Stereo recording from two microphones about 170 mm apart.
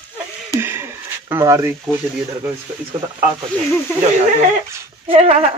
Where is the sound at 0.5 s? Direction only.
15° right (ahead or behind).